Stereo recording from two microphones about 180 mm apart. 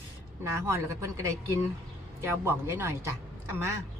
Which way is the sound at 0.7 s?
15° right (ahead or behind).